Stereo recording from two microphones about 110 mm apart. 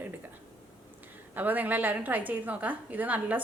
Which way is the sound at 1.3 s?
15° right (ahead or behind).